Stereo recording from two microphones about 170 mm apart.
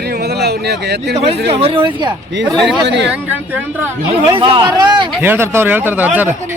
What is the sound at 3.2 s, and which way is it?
Speech, 10° right (ahead or behind).